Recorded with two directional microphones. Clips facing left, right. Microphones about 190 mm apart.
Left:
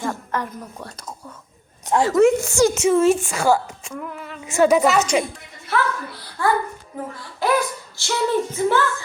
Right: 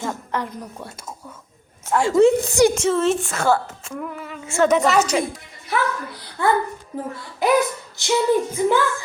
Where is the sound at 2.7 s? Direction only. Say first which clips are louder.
Left 3 dB; 10° left (ahead or behind).